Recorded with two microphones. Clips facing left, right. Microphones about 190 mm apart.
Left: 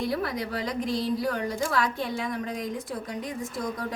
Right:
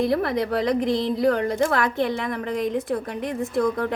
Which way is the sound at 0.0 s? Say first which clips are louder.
Right 7 dB; 60° right (ahead or behind).